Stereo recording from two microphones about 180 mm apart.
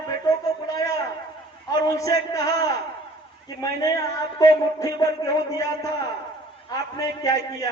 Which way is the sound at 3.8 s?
20° left (ahead or behind).